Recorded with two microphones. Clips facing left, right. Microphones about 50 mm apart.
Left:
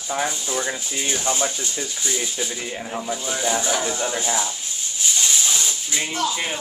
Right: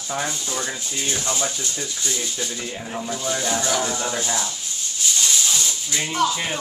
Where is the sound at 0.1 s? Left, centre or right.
Centre.